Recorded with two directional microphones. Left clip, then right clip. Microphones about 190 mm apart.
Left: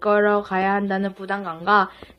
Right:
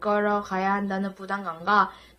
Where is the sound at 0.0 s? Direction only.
35° left (ahead or behind).